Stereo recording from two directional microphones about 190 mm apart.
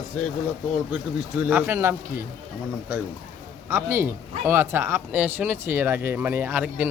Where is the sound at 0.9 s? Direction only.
10° right (ahead or behind).